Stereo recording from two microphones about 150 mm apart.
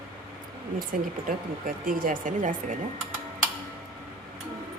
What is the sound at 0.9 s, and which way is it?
Speech, 60° right (ahead or behind).